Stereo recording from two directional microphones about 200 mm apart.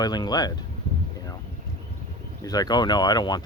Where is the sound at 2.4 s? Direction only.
20° left (ahead or behind).